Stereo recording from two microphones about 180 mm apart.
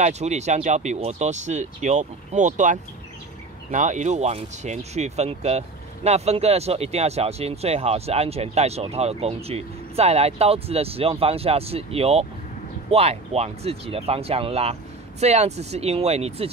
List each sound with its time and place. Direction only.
0.0 s speech: 40° right (ahead or behind)